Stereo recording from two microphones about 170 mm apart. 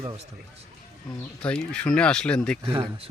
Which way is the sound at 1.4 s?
5° left (ahead or behind).